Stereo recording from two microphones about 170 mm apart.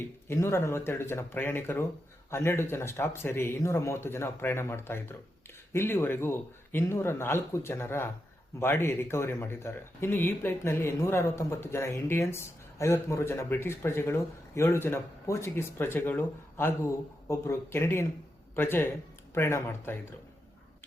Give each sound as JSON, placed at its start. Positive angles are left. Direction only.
{"t": 0.3, "sound": "speech", "side_deg": 15}